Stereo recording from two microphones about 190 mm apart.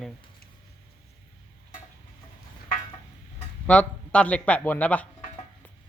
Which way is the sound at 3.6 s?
5° left (ahead or behind).